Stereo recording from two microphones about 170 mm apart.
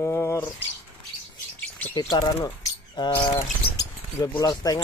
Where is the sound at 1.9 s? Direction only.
25° left (ahead or behind).